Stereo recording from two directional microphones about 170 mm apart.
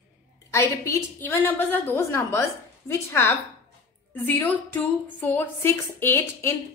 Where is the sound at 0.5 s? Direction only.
15° left (ahead or behind).